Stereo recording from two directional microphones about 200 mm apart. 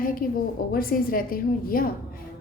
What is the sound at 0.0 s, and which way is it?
A woman's voice, 45° left (ahead or behind).